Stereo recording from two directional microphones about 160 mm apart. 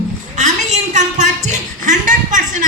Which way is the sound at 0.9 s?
50° right (ahead or behind).